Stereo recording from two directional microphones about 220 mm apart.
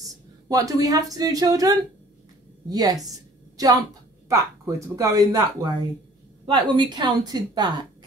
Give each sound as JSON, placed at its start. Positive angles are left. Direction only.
{"t": 0.5, "sound": "a woman's voice", "side_deg": -15}